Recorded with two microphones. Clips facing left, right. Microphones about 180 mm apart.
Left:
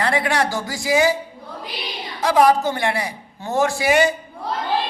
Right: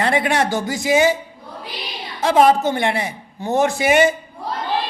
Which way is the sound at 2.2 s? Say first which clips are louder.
Right 1 dB; 25° right (ahead or behind).